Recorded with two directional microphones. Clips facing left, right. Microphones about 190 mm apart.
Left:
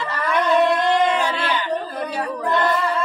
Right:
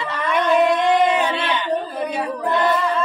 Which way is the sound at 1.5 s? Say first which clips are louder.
Right 1 dB; centre (ahead or behind).